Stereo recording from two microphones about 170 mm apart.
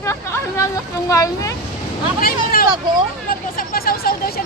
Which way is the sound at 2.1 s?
60° left (ahead or behind).